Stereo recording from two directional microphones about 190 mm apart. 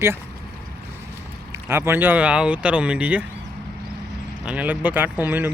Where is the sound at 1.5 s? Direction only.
15° right (ahead or behind).